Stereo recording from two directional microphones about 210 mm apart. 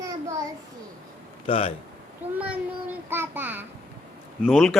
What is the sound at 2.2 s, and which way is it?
Child singing, 30° right (ahead or behind).